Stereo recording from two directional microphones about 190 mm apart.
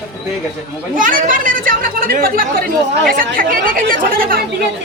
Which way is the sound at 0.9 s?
45° right (ahead or behind).